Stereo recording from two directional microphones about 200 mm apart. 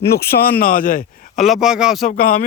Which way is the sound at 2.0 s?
45° left (ahead or behind).